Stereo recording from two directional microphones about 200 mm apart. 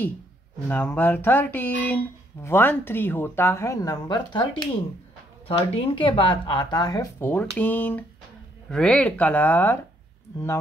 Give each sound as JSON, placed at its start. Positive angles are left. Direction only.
{"t": 0.7, "sound": "speech", "side_deg": 10}